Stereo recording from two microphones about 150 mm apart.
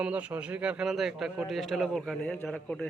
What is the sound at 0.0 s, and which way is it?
A man's voice, 10° right (ahead or behind).